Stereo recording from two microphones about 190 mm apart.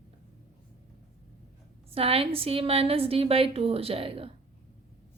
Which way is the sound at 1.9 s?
30° right (ahead or behind).